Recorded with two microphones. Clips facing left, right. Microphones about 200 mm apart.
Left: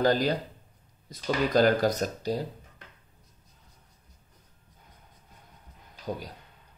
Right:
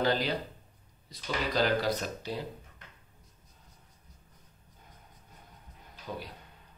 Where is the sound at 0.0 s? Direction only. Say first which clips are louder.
Left 5 dB; 45° left (ahead or behind).